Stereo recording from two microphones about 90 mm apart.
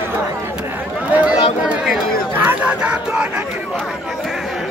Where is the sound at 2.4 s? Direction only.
15° right (ahead or behind).